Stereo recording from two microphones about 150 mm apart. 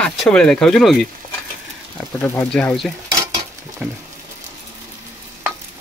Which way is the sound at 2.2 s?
15° left (ahead or behind).